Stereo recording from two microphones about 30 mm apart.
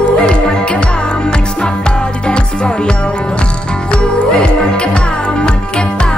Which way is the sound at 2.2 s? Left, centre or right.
Left.